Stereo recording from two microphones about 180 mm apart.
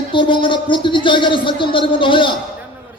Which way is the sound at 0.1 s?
25° left (ahead or behind).